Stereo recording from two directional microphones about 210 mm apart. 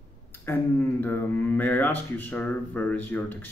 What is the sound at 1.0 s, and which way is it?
A man's voice, 10° left (ahead or behind).